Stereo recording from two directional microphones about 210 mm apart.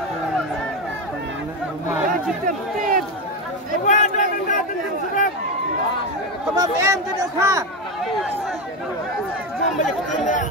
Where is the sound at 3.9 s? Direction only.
35° left (ahead or behind).